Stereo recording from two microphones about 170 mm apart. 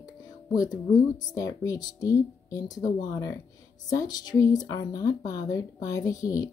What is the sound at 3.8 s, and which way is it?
Speech, 20° left (ahead or behind).